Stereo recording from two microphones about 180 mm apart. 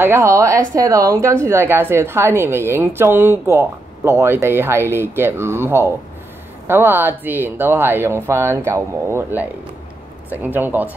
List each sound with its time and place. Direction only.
0.0 s a woman's voice: 15° right (ahead or behind)